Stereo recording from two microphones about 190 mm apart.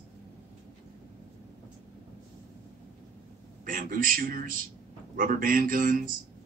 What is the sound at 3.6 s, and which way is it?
Speech, 45° right (ahead or behind).